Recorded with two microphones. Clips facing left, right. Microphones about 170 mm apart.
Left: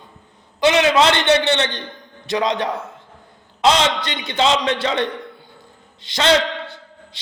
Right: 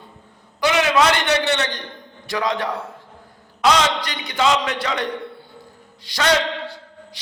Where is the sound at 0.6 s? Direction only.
25° left (ahead or behind).